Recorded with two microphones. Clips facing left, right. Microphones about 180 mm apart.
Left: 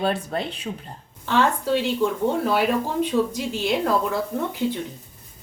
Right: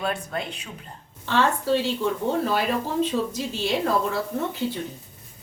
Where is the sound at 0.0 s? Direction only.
35° left (ahead or behind).